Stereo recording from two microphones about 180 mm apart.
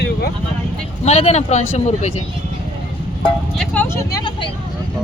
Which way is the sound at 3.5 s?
5° left (ahead or behind).